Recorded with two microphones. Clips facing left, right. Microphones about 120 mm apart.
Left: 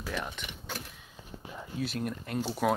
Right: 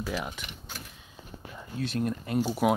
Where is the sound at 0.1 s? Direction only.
5° right (ahead or behind).